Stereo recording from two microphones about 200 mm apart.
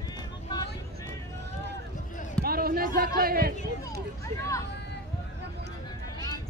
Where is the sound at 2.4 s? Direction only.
50° right (ahead or behind).